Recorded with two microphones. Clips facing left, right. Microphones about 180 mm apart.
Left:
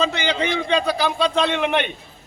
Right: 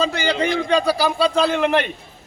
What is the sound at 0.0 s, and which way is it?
A man's voice, 10° right (ahead or behind).